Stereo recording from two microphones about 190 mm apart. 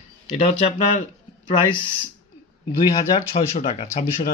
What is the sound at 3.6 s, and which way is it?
Speech, 40° left (ahead or behind).